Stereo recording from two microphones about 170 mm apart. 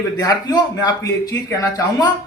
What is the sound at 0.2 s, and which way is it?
Speech, 20° left (ahead or behind).